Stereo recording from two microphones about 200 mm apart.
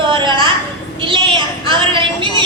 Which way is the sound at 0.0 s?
25° right (ahead or behind).